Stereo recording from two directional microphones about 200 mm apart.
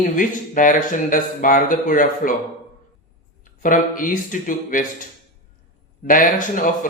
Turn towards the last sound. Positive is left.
turn(degrees=40)  # may be behind; listen again after turning